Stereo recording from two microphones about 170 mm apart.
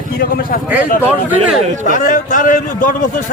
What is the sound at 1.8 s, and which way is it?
A man's voice, 50° left (ahead or behind).